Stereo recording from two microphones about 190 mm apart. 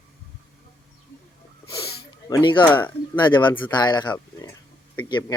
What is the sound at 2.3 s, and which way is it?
Speech, 25° left (ahead or behind).